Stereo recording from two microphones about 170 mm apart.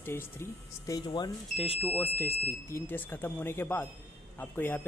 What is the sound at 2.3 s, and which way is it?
Speech, 15° right (ahead or behind).